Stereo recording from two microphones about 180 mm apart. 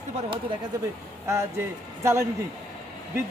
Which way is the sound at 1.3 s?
15° right (ahead or behind).